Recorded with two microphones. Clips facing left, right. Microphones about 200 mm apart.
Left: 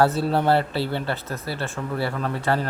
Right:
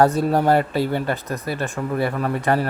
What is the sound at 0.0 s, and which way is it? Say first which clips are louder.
Speech: right 3 dB; 15° right (ahead or behind).